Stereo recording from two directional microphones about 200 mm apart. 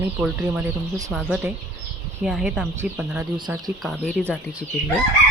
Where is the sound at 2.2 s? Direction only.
5° right (ahead or behind).